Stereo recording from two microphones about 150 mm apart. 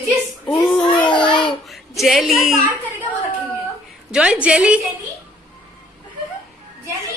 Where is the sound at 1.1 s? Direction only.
30° left (ahead or behind).